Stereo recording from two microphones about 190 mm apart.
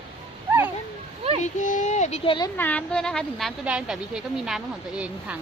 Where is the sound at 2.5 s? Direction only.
10° left (ahead or behind).